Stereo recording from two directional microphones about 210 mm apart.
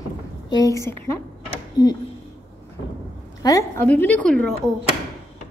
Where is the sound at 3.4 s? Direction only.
15° left (ahead or behind).